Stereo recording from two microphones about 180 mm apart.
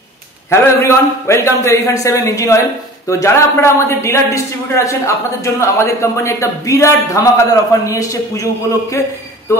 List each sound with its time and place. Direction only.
0.5 s a man's voice: 15° left (ahead or behind)